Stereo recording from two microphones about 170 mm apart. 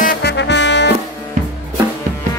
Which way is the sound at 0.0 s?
85° left.